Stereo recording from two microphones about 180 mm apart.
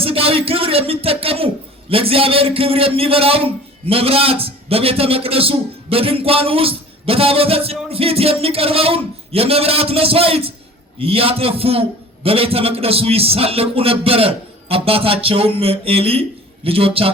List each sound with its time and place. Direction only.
0.0 s a man's voice: 30° right (ahead or behind)